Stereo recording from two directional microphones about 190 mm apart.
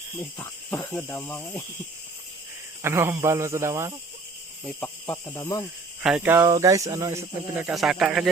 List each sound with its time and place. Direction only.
0.2 s speech: 15° left (ahead or behind)
2.8 s speech: 15° right (ahead or behind)
4.6 s cricket: 5° left (ahead or behind)
5.1 s speech: 20° left (ahead or behind)
6.0 s cricket: 5° right (ahead or behind)
6.3 s speech: 15° right (ahead or behind)